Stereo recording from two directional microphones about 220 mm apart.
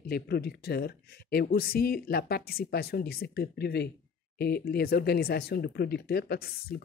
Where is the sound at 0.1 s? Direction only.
45° left (ahead or behind).